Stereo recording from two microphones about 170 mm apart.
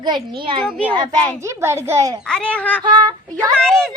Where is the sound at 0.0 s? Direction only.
30° right (ahead or behind).